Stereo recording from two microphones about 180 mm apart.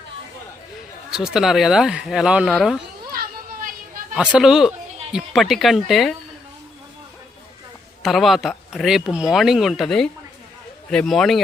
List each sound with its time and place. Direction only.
1.1 s speech: 5° right (ahead or behind)
3.1 s a sound: 55° right (ahead or behind)
4.1 s speech: 5° right (ahead or behind)
8.0 s speech: centre (ahead or behind)